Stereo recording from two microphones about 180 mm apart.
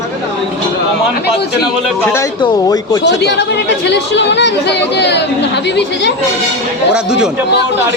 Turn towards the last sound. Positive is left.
turn(degrees=-5)  # may be behind; listen again after turning